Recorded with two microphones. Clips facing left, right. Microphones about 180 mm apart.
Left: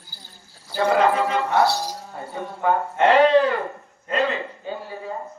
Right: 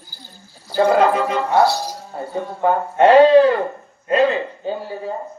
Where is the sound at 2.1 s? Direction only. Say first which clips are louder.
Right 8 dB; 35° right (ahead or behind).